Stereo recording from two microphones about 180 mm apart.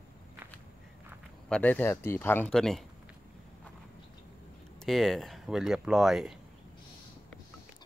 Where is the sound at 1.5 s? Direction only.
10° left (ahead or behind).